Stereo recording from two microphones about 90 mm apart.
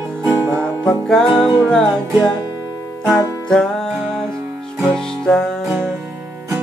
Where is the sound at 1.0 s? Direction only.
5° left (ahead or behind).